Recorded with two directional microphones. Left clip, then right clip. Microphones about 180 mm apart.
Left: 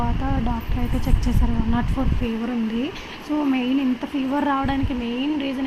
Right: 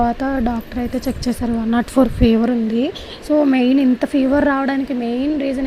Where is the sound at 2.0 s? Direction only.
40° right (ahead or behind).